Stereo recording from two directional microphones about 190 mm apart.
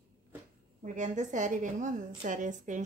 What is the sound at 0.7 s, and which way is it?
A woman's voice, 40° right (ahead or behind).